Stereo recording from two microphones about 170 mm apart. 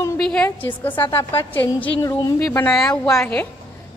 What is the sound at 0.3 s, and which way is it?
A woman's voice, 10° left (ahead or behind).